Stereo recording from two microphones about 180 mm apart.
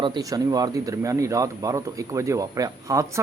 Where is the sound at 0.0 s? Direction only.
20° right (ahead or behind).